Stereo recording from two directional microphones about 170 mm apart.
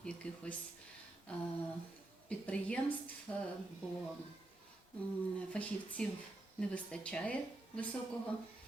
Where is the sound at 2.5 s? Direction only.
5° left (ahead or behind).